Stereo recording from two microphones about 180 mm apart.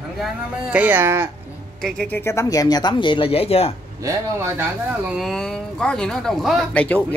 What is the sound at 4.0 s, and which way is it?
Speech, 15° right (ahead or behind).